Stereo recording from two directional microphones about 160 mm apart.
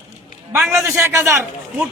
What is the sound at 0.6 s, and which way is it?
Speech, centre (ahead or behind).